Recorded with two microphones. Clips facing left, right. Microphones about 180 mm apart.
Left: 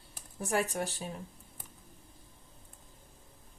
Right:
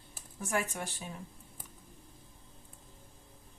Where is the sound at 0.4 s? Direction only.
35° left (ahead or behind).